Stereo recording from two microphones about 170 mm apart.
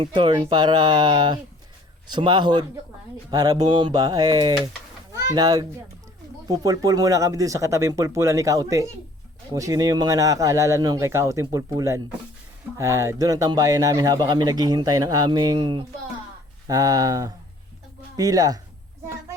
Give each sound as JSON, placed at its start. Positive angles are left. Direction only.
{"t": 0.0, "sound": "speech", "side_deg": -30}